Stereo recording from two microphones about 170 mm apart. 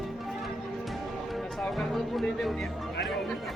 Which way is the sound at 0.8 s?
Centre (ahead or behind).